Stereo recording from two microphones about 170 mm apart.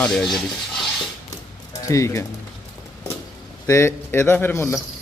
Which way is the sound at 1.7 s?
20° left (ahead or behind).